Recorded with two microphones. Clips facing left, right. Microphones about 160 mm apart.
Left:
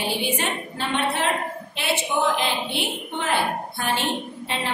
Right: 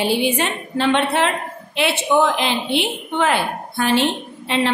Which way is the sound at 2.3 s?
90° right.